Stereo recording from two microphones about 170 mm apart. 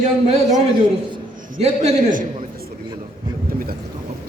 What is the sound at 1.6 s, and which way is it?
Speech, 40° right (ahead or behind).